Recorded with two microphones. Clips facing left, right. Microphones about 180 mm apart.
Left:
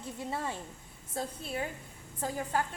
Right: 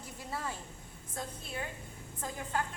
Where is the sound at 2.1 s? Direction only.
35° left (ahead or behind).